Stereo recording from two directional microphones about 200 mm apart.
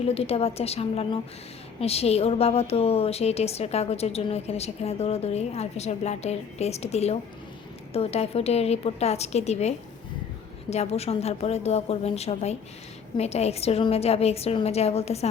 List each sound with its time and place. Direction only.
0.0 s a woman's voice: 30° left (ahead or behind)